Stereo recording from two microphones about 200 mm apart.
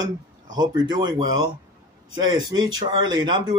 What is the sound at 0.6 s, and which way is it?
A man's voice, 20° right (ahead or behind).